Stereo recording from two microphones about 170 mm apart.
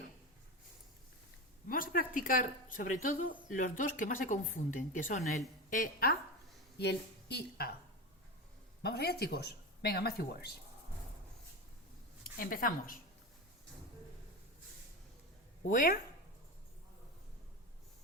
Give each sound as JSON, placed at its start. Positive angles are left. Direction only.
{"t": 1.6, "sound": "a woman's voice", "side_deg": 55}
{"t": 6.7, "sound": "a woman's voice", "side_deg": 75}
{"t": 8.8, "sound": "speech", "side_deg": 70}
{"t": 12.2, "sound": "a woman's voice", "side_deg": 55}
{"t": 15.6, "sound": "speech", "side_deg": 50}